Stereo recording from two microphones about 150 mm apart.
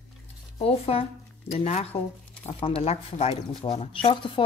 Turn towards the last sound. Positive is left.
turn(degrees=35)  # may be behind; listen again after turning